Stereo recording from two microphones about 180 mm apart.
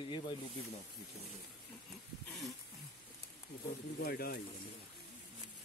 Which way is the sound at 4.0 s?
60° left (ahead or behind).